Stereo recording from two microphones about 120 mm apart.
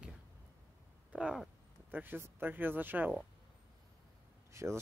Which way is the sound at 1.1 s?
10° right (ahead or behind).